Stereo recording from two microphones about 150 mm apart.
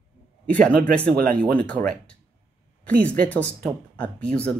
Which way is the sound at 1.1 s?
85° right.